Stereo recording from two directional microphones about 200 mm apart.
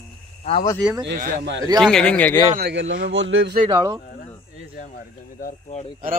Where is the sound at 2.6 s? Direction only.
65° right (ahead or behind).